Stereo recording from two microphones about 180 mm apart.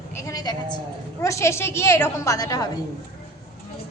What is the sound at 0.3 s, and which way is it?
A woman's voice, 20° left (ahead or behind).